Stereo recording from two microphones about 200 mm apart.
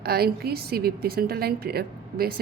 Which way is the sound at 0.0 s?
50° right (ahead or behind).